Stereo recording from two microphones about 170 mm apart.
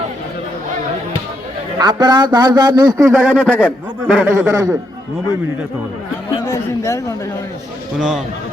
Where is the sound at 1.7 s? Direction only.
25° right (ahead or behind).